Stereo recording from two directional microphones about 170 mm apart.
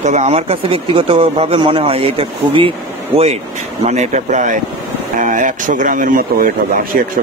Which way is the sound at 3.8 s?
40° right (ahead or behind).